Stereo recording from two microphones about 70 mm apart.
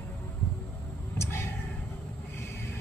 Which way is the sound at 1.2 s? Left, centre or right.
Left.